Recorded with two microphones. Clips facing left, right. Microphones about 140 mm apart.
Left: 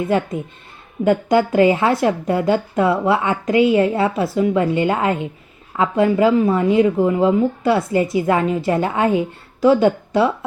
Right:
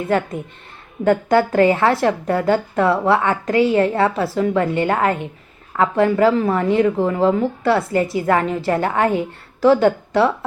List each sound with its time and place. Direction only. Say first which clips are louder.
0.1 s a woman's voice: even; 20° left (ahead or behind)